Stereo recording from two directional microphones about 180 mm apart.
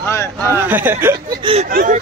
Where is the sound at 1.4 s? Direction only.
30° right (ahead or behind).